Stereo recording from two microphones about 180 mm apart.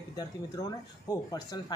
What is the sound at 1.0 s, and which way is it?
Speech, 20° left (ahead or behind).